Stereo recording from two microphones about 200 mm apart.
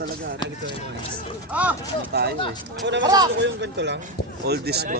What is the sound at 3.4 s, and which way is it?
Speech, 60° right (ahead or behind).